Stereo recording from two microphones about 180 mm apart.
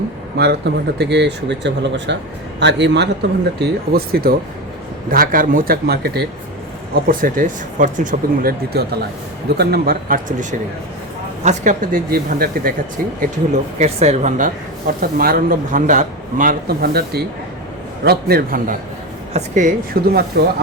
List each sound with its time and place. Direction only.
0.3 s speech: 70° right (ahead or behind)
3.6 s a man's voice: 55° right (ahead or behind)
6.9 s a man's voice: 50° right (ahead or behind)
11.4 s a man's voice: 45° right (ahead or behind)
13.5 s a man's voice: 35° right (ahead or behind)
19.3 s a man's voice: 40° right (ahead or behind)
20.4 s speech: 75° right (ahead or behind)